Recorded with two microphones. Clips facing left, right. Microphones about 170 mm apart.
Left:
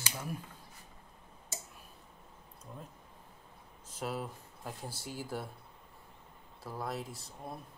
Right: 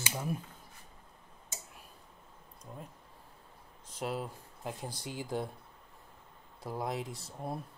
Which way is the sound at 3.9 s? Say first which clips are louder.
Right 2 dB; 10° right (ahead or behind).